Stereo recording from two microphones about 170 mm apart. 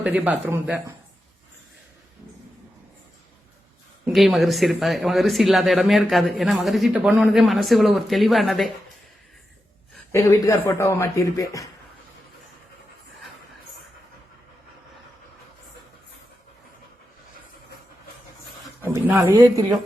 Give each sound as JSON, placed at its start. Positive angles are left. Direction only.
{"t": 0.0, "sound": "speech", "side_deg": -5}
{"t": 4.0, "sound": "speech", "side_deg": 0}
{"t": 10.1, "sound": "speech", "side_deg": 15}
{"t": 18.8, "sound": "a man's voice", "side_deg": -15}